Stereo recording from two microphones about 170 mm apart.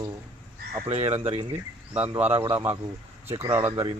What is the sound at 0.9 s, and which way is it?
Speech, 35° right (ahead or behind).